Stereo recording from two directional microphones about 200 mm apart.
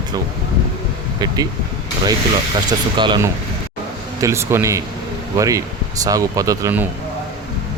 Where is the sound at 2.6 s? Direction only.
20° right (ahead or behind).